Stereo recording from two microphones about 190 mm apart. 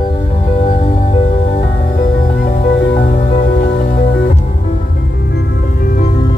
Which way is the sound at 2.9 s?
40° left (ahead or behind).